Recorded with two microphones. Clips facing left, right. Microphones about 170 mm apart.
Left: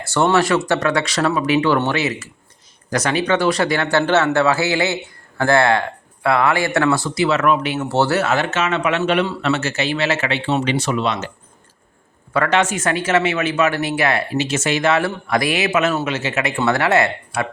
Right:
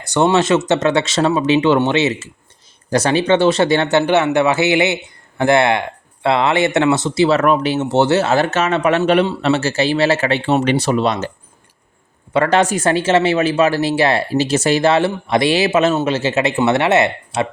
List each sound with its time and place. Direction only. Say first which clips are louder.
0.0 s speech: right 2 dB; 15° right (ahead or behind)
7.9 s speech: right 3 dB; 20° right (ahead or behind); by 11.3 s 40° right (ahead or behind)
12.5 s speech: right 3 dB; 35° right (ahead or behind)